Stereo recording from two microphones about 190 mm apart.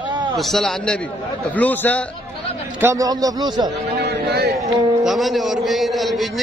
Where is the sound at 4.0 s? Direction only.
60° right (ahead or behind).